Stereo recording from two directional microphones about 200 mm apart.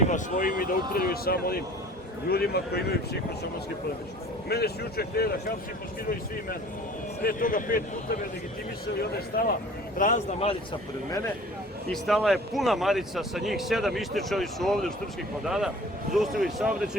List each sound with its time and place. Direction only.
0.1 s speech: 45° left (ahead or behind)
4.4 s speech: 50° left (ahead or behind)
7.2 s speech: 45° left (ahead or behind)
9.0 s speech: 50° left (ahead or behind)
10.0 s speech: 40° left (ahead or behind)
11.9 s speech: centre (ahead or behind)